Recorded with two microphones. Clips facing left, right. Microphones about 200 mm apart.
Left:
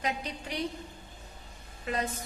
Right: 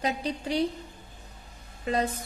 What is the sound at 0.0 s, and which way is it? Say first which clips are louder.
Speech: right 5 dB; 35° right (ahead or behind).